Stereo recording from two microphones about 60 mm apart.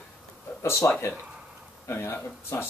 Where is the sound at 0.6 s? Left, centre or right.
Left.